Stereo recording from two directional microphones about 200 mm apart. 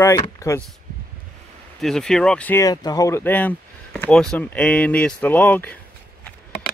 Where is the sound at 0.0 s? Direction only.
15° left (ahead or behind).